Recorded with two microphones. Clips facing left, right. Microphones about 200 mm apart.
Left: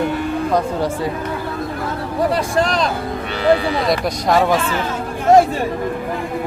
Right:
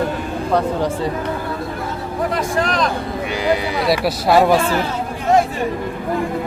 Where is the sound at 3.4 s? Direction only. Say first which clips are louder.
Left 3 dB; 15° right (ahead or behind).